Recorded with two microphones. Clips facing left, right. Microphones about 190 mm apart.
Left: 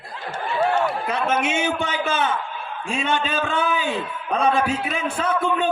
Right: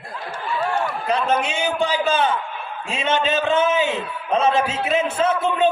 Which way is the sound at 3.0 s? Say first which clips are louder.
Right 4 dB; 20° right (ahead or behind).